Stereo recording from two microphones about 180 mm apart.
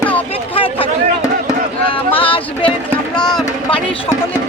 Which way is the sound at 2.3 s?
30° left (ahead or behind).